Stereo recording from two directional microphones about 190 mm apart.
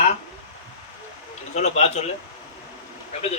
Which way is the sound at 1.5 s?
35° left (ahead or behind).